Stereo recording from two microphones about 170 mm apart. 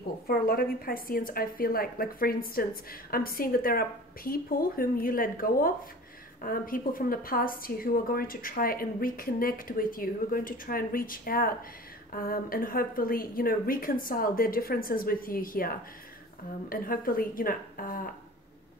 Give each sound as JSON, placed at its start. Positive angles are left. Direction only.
{"t": 0.3, "sound": "a woman's voice", "side_deg": 60}